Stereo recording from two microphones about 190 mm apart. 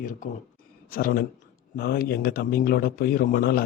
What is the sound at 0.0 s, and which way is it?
Speech, 45° left (ahead or behind).